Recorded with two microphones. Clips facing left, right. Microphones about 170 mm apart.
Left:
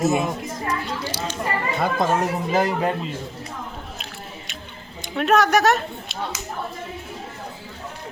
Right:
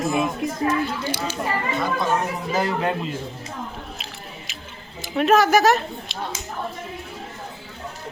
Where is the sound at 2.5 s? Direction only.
15° left (ahead or behind).